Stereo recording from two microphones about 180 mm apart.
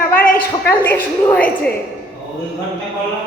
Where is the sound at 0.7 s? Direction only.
10° left (ahead or behind).